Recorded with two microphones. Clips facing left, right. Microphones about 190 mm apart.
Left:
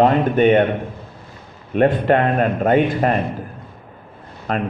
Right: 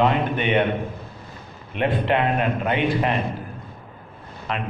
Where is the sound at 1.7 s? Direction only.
45° left (ahead or behind).